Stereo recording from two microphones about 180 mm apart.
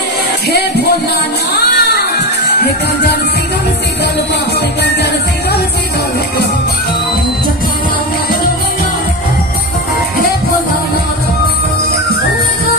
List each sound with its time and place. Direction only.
0.5 s music: 65° left (ahead or behind)
4.6 s music: 65° left (ahead or behind)